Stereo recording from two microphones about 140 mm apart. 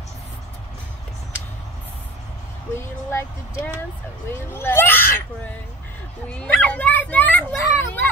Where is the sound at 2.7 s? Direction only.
20° left (ahead or behind).